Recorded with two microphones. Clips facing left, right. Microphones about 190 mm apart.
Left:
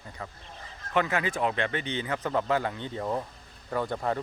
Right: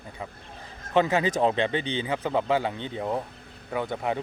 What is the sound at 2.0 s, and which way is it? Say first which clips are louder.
Speech: right 1 dB; 15° right (ahead or behind).